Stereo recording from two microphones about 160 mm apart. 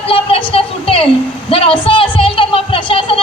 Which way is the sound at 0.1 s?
35° left (ahead or behind).